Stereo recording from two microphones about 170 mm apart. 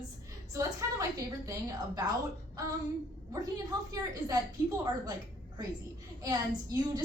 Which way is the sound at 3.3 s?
20° right (ahead or behind).